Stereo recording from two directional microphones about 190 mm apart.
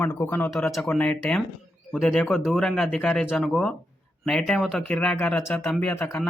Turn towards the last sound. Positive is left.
turn(degrees=10)  # may be behind; listen again after turning